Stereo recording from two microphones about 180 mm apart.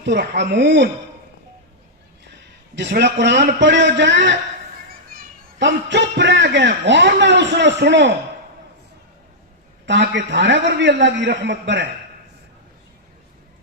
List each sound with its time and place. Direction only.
0.0 s a man's voice: 70° right (ahead or behind)
2.7 s a man's voice: 70° right (ahead or behind)
4.9 s children playing: 55° right (ahead or behind)
5.6 s a man's voice: 80° right
9.8 s a man's voice: 80° right